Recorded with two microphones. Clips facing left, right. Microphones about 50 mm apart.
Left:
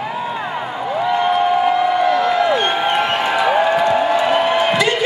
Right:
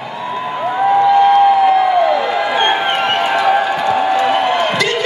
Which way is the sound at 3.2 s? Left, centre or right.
Centre.